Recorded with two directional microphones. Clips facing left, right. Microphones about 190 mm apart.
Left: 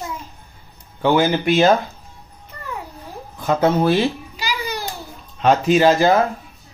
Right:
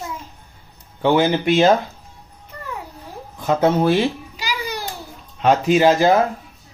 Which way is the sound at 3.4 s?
20° right (ahead or behind).